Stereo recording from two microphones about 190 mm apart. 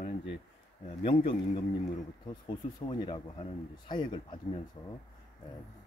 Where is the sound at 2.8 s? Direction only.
25° left (ahead or behind).